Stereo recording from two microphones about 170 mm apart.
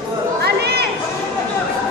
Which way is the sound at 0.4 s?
75° right (ahead or behind).